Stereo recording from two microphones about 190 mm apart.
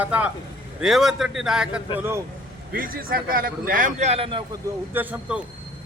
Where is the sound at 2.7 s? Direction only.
50° right (ahead or behind); by 4.4 s 30° right (ahead or behind).